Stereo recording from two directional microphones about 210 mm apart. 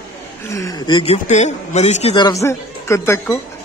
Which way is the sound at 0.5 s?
15° left (ahead or behind).